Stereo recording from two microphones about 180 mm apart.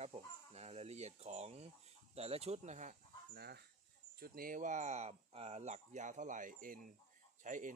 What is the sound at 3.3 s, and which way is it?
Speech, 60° right (ahead or behind).